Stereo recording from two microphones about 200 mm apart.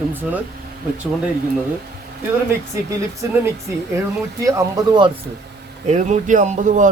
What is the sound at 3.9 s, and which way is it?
Speech, 15° right (ahead or behind).